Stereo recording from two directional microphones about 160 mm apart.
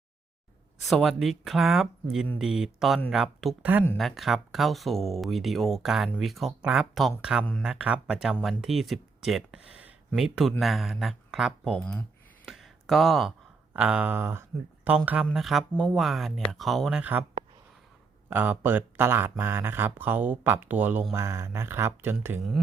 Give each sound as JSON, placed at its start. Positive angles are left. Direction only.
{"t": 0.9, "sound": "speech", "side_deg": 0}
{"t": 12.5, "sound": "a sound", "side_deg": 0}
{"t": 13.7, "sound": "speech", "side_deg": -5}
{"t": 18.3, "sound": "speech", "side_deg": -10}
{"t": 22.6, "sound": "speech", "side_deg": 0}